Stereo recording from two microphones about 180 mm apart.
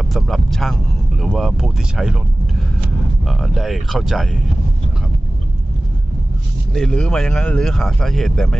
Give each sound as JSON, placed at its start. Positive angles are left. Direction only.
{"t": 0.1, "sound": "speech", "side_deg": 0}
{"t": 3.3, "sound": "speech", "side_deg": 0}
{"t": 6.7, "sound": "speech", "side_deg": 5}